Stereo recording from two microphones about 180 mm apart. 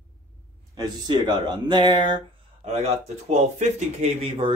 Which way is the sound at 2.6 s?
35° right (ahead or behind).